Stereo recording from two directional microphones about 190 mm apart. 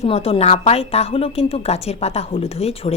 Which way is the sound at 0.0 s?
30° left (ahead or behind).